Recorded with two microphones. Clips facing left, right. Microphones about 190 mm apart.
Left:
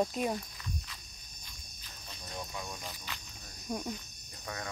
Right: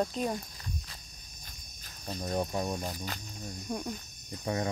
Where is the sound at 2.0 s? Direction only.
45° right (ahead or behind).